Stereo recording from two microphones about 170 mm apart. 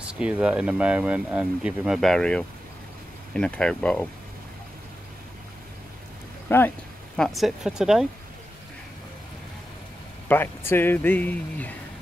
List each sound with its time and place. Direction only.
0.0 s speech: 5° right (ahead or behind)
6.5 s speech: 15° left (ahead or behind)
7.2 s speech: centre (ahead or behind)
10.2 s speech: 10° left (ahead or behind)